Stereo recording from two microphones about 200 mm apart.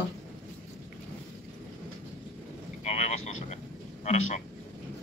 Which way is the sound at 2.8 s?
35° left (ahead or behind).